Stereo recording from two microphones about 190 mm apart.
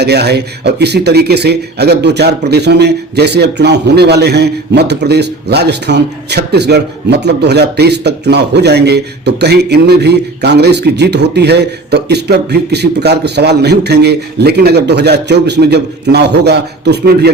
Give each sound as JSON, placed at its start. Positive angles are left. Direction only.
{"t": 0.0, "sound": "speech", "side_deg": -60}